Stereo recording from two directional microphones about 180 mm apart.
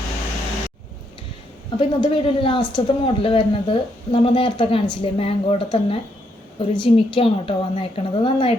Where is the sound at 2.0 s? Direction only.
30° left (ahead or behind).